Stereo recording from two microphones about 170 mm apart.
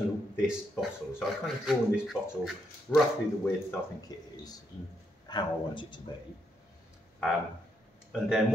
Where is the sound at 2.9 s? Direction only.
10° left (ahead or behind).